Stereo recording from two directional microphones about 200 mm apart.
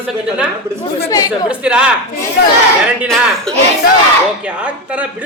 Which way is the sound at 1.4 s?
5° right (ahead or behind).